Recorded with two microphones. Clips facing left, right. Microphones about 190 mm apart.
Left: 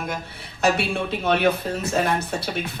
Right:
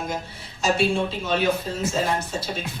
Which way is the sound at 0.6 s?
60° left (ahead or behind).